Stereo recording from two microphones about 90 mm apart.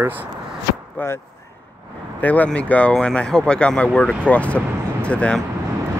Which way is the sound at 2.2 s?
15° left (ahead or behind).